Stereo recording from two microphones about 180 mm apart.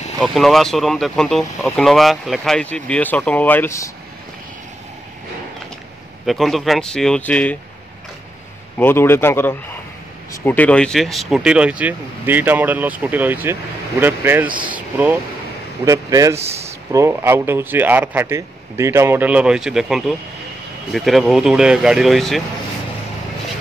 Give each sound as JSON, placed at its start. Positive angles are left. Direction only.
{"t": 0.2, "sound": "speech", "side_deg": 0}
{"t": 6.2, "sound": "speech", "side_deg": 0}
{"t": 8.7, "sound": "speech", "side_deg": 10}